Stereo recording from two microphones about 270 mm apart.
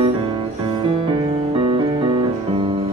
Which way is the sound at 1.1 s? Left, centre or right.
Centre.